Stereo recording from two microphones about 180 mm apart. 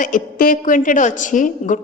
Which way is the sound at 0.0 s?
50° left (ahead or behind).